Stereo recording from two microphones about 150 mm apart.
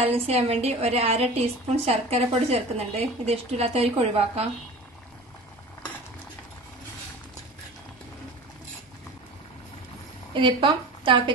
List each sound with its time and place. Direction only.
0.0 s a woman's voice: 45° right (ahead or behind)
10.3 s a woman's voice: 35° right (ahead or behind)